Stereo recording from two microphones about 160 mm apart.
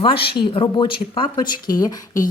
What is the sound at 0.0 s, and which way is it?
A woman's voice, 35° left (ahead or behind).